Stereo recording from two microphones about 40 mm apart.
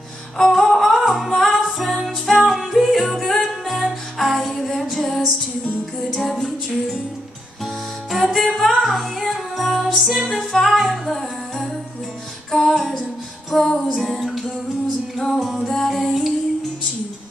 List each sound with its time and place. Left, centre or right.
0.4 s music: centre
6.2 s music: centre
10.3 s music: centre